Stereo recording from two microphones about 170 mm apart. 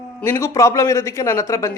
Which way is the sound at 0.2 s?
15° left (ahead or behind).